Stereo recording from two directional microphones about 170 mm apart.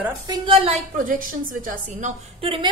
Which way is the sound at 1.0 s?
50° right (ahead or behind).